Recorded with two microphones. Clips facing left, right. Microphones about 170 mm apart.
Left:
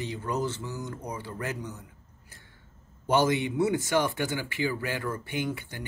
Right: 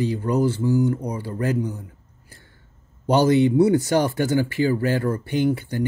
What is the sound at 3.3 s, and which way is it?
Speech, 40° right (ahead or behind).